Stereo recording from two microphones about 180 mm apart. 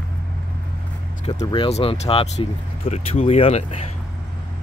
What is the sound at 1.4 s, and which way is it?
Speech, 30° left (ahead or behind).